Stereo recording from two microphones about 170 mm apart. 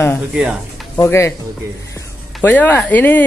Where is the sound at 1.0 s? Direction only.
15° left (ahead or behind).